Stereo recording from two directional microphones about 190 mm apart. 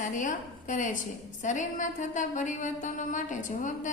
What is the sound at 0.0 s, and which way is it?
Speech, 45° left (ahead or behind).